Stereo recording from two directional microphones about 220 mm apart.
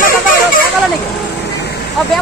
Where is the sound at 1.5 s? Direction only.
45° left (ahead or behind).